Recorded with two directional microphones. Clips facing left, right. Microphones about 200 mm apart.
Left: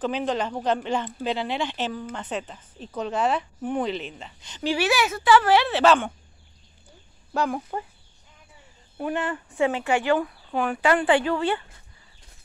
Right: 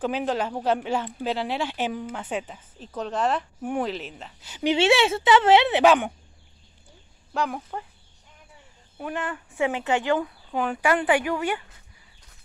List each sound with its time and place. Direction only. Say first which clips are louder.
0.0 s speech: even; 5° right (ahead or behind)
4.6 s a woman's voice: right 4 dB; 25° right (ahead or behind)
7.3 s speech: left 2 dB; centre (ahead or behind)
8.9 s speech: left 4 dB; 5° left (ahead or behind)
9.6 s speech: left 1 dB; 15° right (ahead or behind)